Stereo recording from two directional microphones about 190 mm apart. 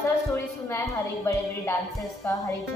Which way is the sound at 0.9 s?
15° left (ahead or behind).